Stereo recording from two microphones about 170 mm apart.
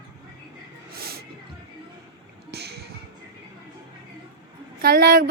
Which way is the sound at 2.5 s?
75° right (ahead or behind).